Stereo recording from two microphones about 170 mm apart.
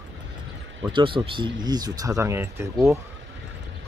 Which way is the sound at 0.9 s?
30° right (ahead or behind).